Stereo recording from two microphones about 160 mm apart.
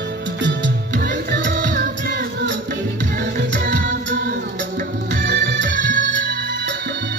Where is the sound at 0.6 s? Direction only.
85° right.